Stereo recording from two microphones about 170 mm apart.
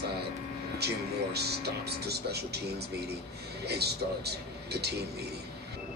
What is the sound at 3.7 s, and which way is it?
A man's voice, 70° right (ahead or behind).